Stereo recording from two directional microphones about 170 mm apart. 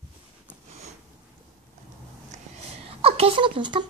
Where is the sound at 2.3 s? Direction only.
40° right (ahead or behind).